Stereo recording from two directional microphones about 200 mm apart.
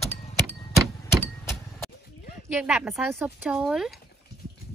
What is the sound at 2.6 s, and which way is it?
Speech, centre (ahead or behind).